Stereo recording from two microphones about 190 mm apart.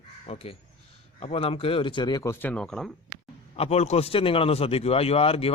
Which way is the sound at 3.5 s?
35° left (ahead or behind).